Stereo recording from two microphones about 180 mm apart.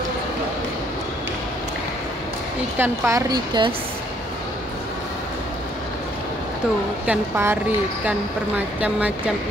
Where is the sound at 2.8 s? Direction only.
15° right (ahead or behind).